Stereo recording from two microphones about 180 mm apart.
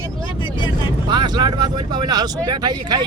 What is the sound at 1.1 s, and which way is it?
Speech, 25° right (ahead or behind).